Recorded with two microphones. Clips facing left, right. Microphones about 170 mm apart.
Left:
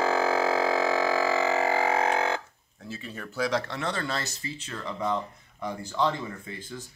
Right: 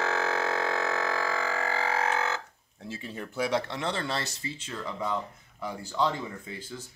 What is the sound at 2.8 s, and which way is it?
Speech, 20° right (ahead or behind).